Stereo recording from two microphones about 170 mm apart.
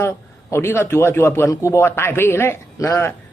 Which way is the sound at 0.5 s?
15° left (ahead or behind).